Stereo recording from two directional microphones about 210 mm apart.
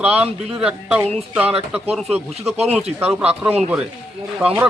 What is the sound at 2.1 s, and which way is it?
Speech, 30° right (ahead or behind).